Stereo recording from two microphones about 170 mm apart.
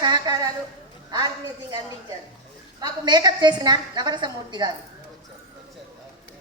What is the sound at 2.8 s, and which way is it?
A woman's voice, 25° right (ahead or behind).